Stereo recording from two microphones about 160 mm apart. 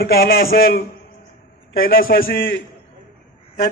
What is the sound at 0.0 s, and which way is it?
A man's voice, 70° left (ahead or behind).